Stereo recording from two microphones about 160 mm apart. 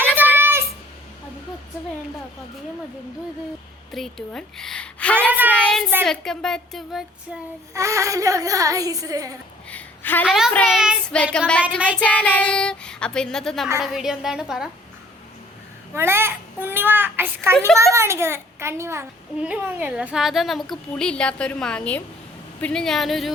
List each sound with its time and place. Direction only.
0.0 s child singing: 15° right (ahead or behind)
3.9 s a woman's voice: 5° left (ahead or behind)
5.1 s a sound: 10° right (ahead or behind)
5.5 s child singing: 5° left (ahead or behind)
6.1 s a child's voice: 5° left (ahead or behind)
7.7 s speech: 20° right (ahead or behind)
9.6 s a sound: 10° left (ahead or behind)
10.2 s a child's voice: 5° right (ahead or behind)
15.9 s a child's voice: 15° right (ahead or behind); by 23.3 s centre (ahead or behind)